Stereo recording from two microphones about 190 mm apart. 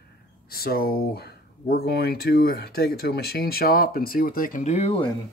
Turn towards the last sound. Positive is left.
turn(degrees=30)  # may be behind; listen again after turning